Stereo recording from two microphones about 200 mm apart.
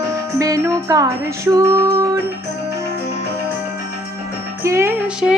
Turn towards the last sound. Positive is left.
turn(degrees=-5)  # may be behind; listen again after turning